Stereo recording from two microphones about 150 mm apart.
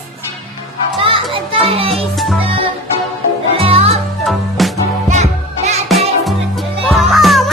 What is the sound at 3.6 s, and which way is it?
Music, 40° right (ahead or behind).